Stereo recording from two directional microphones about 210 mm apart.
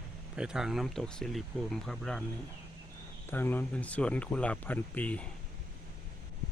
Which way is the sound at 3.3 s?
10° left (ahead or behind).